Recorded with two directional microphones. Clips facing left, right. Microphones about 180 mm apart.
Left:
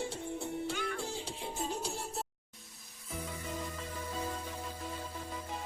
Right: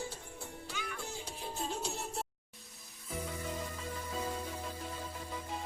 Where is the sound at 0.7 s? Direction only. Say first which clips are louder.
Left 7 dB; 60° left (ahead or behind).